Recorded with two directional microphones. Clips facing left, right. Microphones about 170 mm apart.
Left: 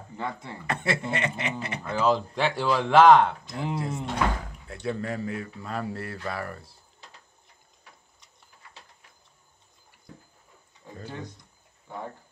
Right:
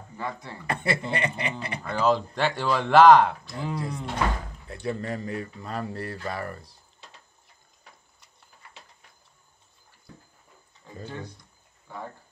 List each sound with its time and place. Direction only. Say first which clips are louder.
0.2 s speech: even; 25° left (ahead or behind)
0.7 s speech: right 1 dB; centre (ahead or behind)
3.4 s speech: left 1 dB; 20° left (ahead or behind)
4.6 s speech: even; centre (ahead or behind)